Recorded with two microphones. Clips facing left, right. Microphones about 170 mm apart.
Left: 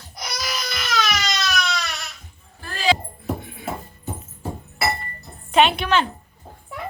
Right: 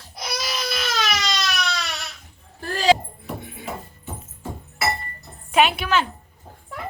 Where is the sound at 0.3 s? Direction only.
25° right (ahead or behind).